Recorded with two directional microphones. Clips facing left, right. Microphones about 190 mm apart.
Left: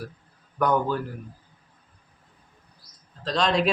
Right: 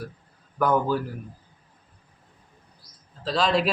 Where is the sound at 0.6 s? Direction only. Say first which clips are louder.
Right 1 dB; 5° right (ahead or behind).